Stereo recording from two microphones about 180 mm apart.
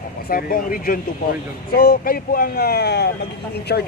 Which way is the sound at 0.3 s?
50° left (ahead or behind).